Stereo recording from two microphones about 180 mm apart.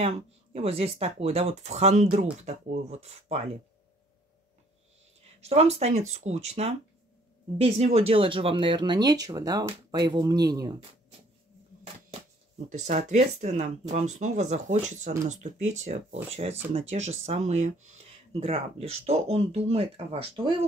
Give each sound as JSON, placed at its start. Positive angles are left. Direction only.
{"t": 0.0, "sound": "speech", "side_deg": -35}
{"t": 5.4, "sound": "speech", "side_deg": -35}
{"t": 12.6, "sound": "speech", "side_deg": -40}